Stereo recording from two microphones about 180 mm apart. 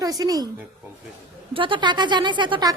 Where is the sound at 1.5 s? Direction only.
30° right (ahead or behind).